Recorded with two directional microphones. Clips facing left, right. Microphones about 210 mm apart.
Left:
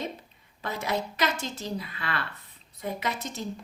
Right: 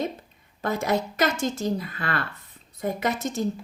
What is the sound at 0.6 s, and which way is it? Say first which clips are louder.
Speech: right 6 dB; 45° right (ahead or behind).